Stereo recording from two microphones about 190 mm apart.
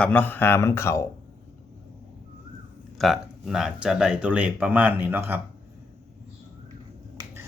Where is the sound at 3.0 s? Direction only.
Centre (ahead or behind).